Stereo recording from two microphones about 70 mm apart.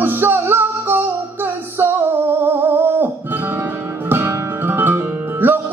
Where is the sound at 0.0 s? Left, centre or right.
Right.